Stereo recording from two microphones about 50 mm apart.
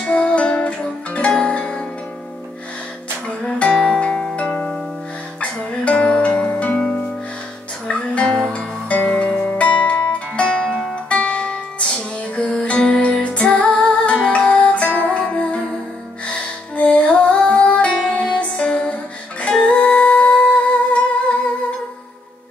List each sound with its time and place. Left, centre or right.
0.0 s music: centre
3.3 s music: left